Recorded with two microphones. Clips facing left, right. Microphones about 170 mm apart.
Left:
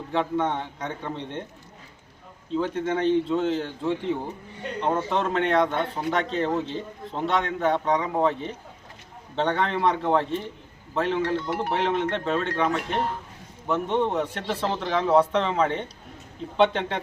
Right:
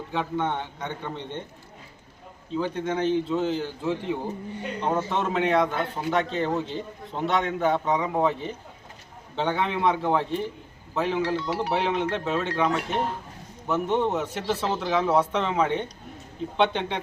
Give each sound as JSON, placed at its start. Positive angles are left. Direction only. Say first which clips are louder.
{"t": 0.1, "sound": "a man's voice", "louder": "left 3 dB", "side_deg": 0}
{"t": 2.5, "sound": "a man's voice", "louder": "left 2 dB", "side_deg": 0}